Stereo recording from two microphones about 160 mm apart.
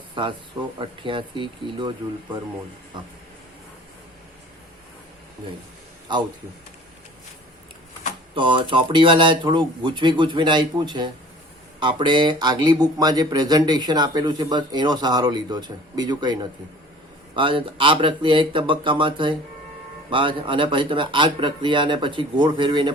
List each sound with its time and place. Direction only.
0.8 s speech: 30° right (ahead or behind)
6.1 s speech: 30° right (ahead or behind)
8.4 s speech: 30° right (ahead or behind)